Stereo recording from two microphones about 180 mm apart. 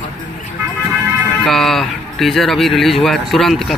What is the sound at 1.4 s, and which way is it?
Speech, centre (ahead or behind).